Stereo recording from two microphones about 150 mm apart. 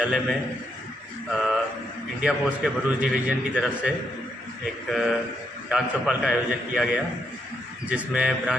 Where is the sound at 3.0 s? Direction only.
5° right (ahead or behind).